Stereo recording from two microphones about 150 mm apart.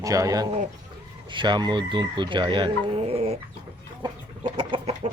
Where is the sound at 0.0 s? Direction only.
20° right (ahead or behind); by 3.3 s 40° right (ahead or behind).